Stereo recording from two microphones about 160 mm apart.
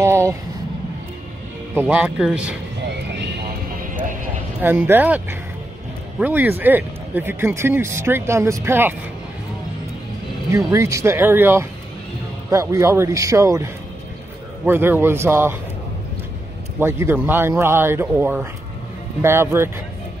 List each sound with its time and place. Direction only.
0.0 s vehicle: 15° right (ahead or behind)
1.8 s speech: 10° right (ahead or behind)
4.6 s speech: 10° right (ahead or behind)
10.5 s speech: 20° right (ahead or behind)
16.8 s speech: 15° right (ahead or behind)